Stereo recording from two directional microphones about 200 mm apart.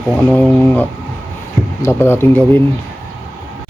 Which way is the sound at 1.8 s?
15° left (ahead or behind).